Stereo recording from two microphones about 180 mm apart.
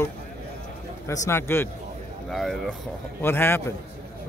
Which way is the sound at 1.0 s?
15° left (ahead or behind).